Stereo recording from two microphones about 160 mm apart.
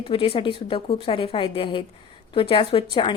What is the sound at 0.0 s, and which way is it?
A woman's voice, 35° left (ahead or behind).